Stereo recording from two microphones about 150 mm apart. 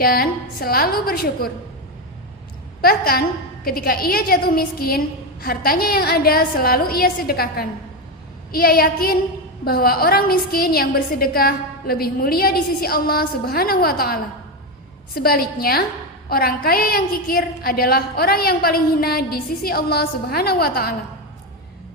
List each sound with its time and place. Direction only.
0.0 s a woman's voice: 80° left
2.8 s a woman's voice: 85° left